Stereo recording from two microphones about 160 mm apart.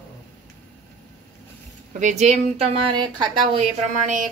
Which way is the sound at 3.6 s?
50° right (ahead or behind).